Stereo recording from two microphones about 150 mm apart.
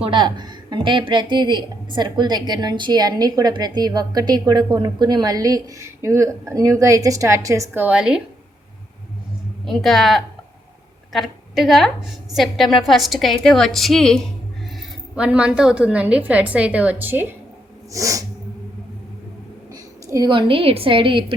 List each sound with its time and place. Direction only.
0.0 s a woman's voice: 30° right (ahead or behind); by 8.2 s 5° right (ahead or behind)
9.6 s a woman's voice: centre (ahead or behind)
15.1 s a woman's voice: 5° right (ahead or behind)
20.1 s a woman's voice: 25° right (ahead or behind)